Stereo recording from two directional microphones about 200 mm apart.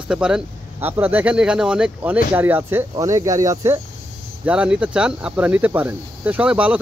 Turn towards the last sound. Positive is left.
turn(degrees=-5)  # may be behind; listen again after turning